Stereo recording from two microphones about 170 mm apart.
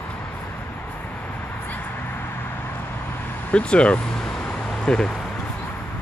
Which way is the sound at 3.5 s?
5° left (ahead or behind).